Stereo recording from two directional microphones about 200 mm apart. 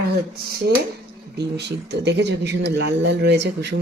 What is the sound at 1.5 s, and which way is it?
Speech, 55° right (ahead or behind).